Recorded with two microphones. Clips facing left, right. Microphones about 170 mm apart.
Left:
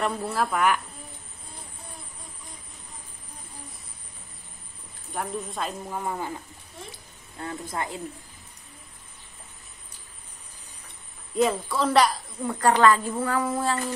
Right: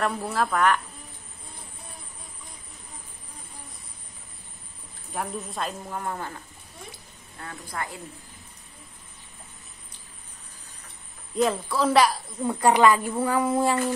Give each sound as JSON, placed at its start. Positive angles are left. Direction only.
{"t": 0.0, "sound": "speech", "side_deg": 0}
{"t": 5.1, "sound": "speech", "side_deg": 0}
{"t": 7.3, "sound": "a woman's voice", "side_deg": 25}
{"t": 11.3, "sound": "speech", "side_deg": 0}
{"t": 12.4, "sound": "a woman's voice", "side_deg": -15}